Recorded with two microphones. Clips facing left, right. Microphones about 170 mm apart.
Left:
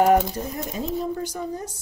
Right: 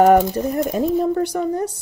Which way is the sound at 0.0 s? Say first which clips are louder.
Right 5 dB; 55° right (ahead or behind).